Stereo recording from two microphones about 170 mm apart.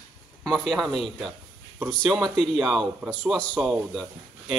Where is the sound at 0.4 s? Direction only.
Centre (ahead or behind).